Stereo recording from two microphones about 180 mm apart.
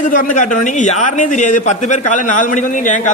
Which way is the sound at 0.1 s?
45° left (ahead or behind).